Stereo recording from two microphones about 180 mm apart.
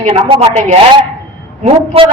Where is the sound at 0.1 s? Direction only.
30° right (ahead or behind).